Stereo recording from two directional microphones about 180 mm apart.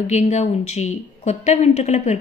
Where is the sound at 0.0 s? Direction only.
40° left (ahead or behind).